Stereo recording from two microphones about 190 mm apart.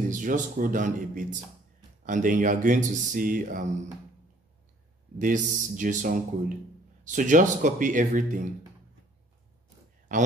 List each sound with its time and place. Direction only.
0.1 s speech: 45° right (ahead or behind)
5.2 s speech: 40° right (ahead or behind)